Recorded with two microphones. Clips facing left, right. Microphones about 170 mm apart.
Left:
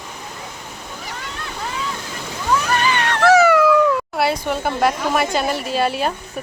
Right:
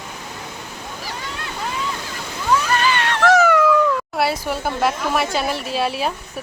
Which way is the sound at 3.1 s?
10° left (ahead or behind).